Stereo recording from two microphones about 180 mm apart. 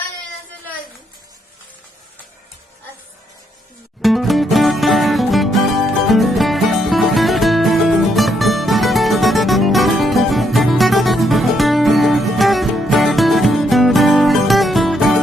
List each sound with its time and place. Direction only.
4.0 s music: centre (ahead or behind)